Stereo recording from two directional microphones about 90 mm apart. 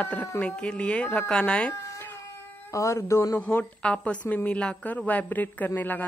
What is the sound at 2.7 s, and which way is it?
Speech, 35° left (ahead or behind).